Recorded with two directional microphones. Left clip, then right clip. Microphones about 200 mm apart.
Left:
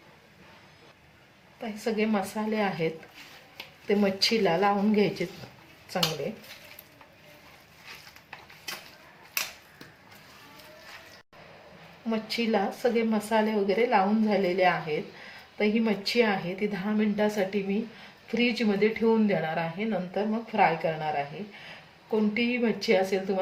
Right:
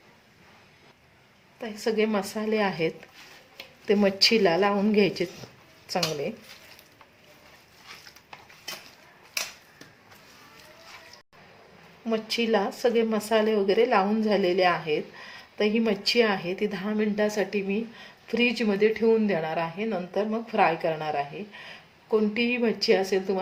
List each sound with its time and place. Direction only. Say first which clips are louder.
1.6 s speech: right 3 dB; 35° right (ahead or behind)
12.0 s speech: right 3 dB; 35° right (ahead or behind)
22.4 s speech: right 2 dB; 35° right (ahead or behind)